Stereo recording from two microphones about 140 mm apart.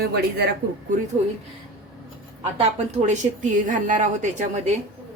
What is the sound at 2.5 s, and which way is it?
Speech, 60° right (ahead or behind).